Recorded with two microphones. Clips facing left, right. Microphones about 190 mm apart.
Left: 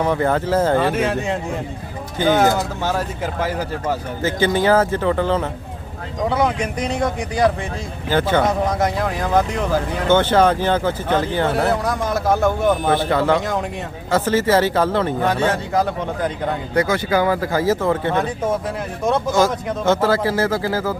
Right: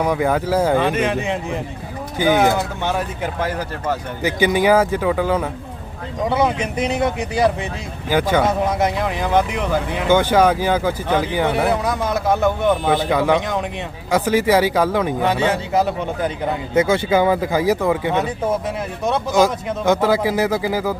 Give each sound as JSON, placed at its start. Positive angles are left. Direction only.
{"t": 0.0, "sound": "speech", "side_deg": -10}
{"t": 0.8, "sound": "speech", "side_deg": 0}
{"t": 2.1, "sound": "speech", "side_deg": -10}
{"t": 2.4, "sound": "speech", "side_deg": 0}
{"t": 4.2, "sound": "speech", "side_deg": -15}
{"t": 8.1, "sound": "speech", "side_deg": -10}
{"t": 13.1, "sound": "speech", "side_deg": -15}
{"t": 13.3, "sound": "speech", "side_deg": 0}
{"t": 14.1, "sound": "speech", "side_deg": -15}
{"t": 16.7, "sound": "speech", "side_deg": -25}
{"t": 19.3, "sound": "speech", "side_deg": -15}